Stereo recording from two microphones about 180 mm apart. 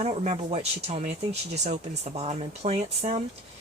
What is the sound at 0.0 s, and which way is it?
Speech, 35° right (ahead or behind).